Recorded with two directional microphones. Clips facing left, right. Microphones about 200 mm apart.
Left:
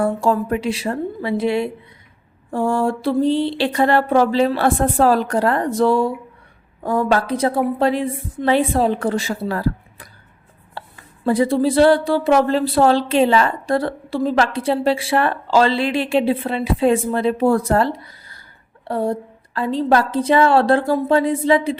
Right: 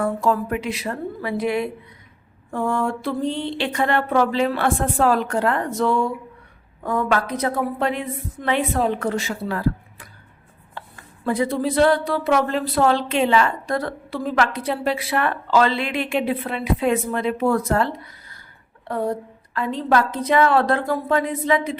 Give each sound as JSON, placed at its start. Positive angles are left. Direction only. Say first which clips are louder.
{"t": 0.0, "sound": "a woman's voice", "louder": "left 3 dB", "side_deg": 30}
{"t": 11.3, "sound": "a woman's voice", "louder": "left 5 dB", "side_deg": 30}